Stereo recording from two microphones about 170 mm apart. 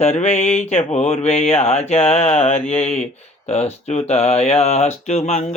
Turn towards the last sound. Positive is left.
turn(degrees=40)  # may be behind; listen again after turning